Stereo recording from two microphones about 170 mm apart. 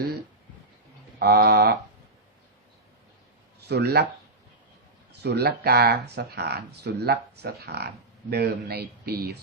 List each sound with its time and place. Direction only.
1.2 s speech: 65° right (ahead or behind)
3.7 s speech: 75° right (ahead or behind)
5.2 s speech: 75° right (ahead or behind)